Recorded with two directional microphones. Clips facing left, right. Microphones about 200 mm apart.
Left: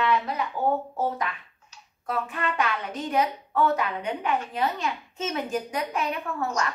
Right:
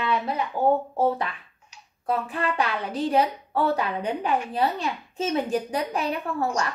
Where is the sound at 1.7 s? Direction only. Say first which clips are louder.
Right 1 dB; 15° right (ahead or behind).